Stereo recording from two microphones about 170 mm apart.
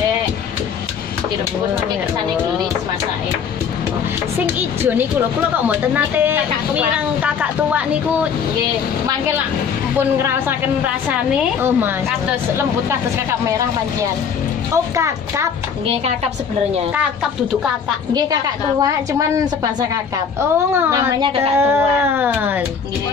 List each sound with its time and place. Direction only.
4.6 s speech: 10° right (ahead or behind)
9.9 s speech: 15° right (ahead or behind)
18.8 s a woman's voice: 20° right (ahead or behind)
21.5 s speech: 15° right (ahead or behind)